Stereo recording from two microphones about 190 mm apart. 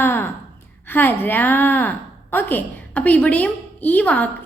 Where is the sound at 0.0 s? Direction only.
10° left (ahead or behind).